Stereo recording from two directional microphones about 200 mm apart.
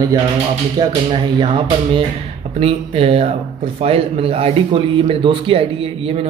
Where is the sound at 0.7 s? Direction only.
25° right (ahead or behind).